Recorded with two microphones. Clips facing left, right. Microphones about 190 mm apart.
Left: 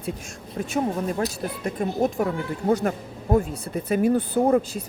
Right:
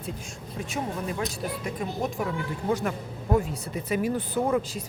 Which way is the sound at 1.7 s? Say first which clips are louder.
Left 9 dB; 45° left (ahead or behind).